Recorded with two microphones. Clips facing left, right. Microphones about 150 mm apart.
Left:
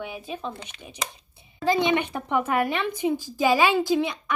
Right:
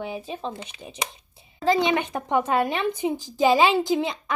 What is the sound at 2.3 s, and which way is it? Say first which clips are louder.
Speech: right 1 dB; 25° right (ahead or behind).